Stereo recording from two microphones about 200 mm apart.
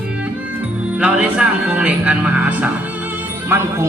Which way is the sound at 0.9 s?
5° right (ahead or behind).